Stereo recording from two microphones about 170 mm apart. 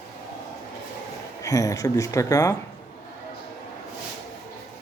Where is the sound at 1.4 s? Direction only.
20° left (ahead or behind).